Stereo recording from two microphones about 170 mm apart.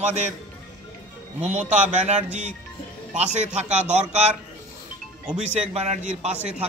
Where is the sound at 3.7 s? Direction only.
40° right (ahead or behind).